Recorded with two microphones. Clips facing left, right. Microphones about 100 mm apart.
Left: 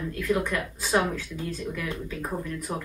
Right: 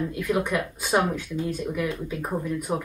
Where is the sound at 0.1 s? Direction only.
15° right (ahead or behind).